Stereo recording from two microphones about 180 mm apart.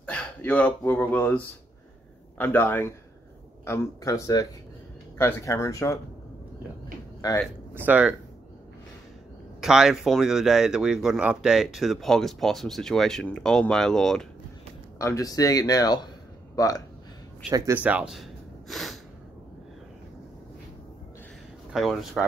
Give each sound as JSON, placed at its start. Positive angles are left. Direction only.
{"t": 0.0, "sound": "speech", "side_deg": 10}
{"t": 7.2, "sound": "speech", "side_deg": 20}
{"t": 7.8, "sound": "speech", "side_deg": -5}
{"t": 9.6, "sound": "speech", "side_deg": -5}
{"t": 15.0, "sound": "speech", "side_deg": 20}
{"t": 17.5, "sound": "speech", "side_deg": -20}
{"t": 17.8, "sound": "gasp", "side_deg": -5}
{"t": 21.7, "sound": "speech", "side_deg": 0}